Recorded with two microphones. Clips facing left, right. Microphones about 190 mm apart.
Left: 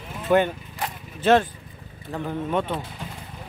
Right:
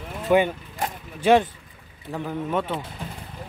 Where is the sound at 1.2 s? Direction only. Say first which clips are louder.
Right 1 dB; 15° right (ahead or behind).